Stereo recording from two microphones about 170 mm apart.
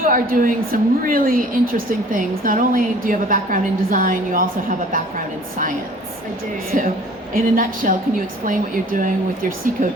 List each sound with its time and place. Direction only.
0.0 s a woman's voice: 55° right (ahead or behind)
7.3 s a woman's voice: 55° right (ahead or behind)